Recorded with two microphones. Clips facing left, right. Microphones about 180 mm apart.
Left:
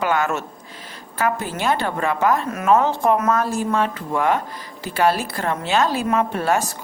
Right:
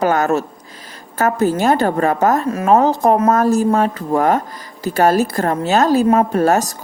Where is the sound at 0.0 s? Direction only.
40° right (ahead or behind).